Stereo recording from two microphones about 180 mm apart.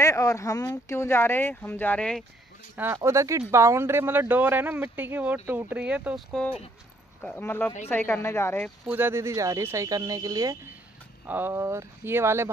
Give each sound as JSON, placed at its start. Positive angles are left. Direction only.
{"t": 0.0, "sound": "speech", "side_deg": 15}
{"t": 2.7, "sound": "speech", "side_deg": -15}
{"t": 7.2, "sound": "speech", "side_deg": 10}
{"t": 8.8, "sound": "speech", "side_deg": -10}